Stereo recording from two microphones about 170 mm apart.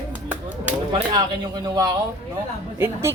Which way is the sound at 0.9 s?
30° right (ahead or behind).